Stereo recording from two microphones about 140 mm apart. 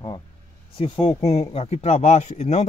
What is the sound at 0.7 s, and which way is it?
Speech, 40° left (ahead or behind).